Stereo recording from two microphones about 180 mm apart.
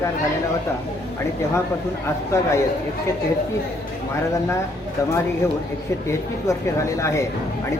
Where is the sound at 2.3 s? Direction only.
15° left (ahead or behind).